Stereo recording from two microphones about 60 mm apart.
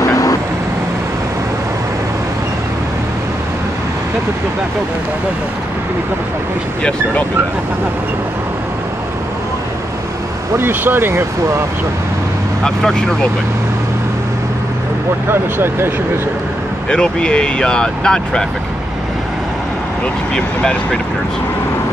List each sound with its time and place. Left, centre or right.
0.0 s vehicle: left
10.6 s speech: right
12.6 s speech: centre
15.2 s speech: right
16.9 s speech: centre
20.3 s speech: centre